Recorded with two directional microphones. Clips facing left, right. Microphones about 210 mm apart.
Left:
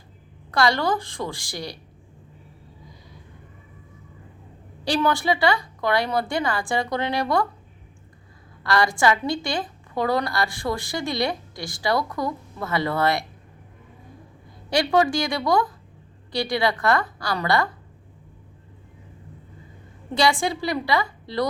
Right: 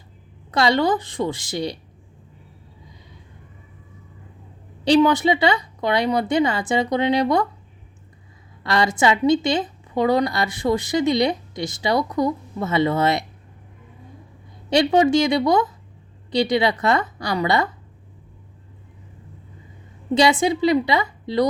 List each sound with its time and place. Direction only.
0.5 s a woman's voice: 20° right (ahead or behind)
4.9 s a woman's voice: 20° right (ahead or behind)
8.6 s a woman's voice: 20° right (ahead or behind)
14.7 s a woman's voice: 20° right (ahead or behind)
20.1 s a woman's voice: 20° right (ahead or behind)